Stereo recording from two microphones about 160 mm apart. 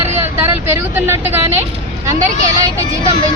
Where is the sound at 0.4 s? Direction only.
15° right (ahead or behind).